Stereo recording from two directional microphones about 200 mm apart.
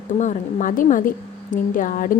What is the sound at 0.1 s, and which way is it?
A woman's voice, 40° left (ahead or behind).